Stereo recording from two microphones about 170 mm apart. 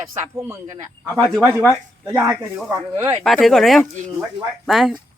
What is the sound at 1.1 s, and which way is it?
Speech, 5° left (ahead or behind).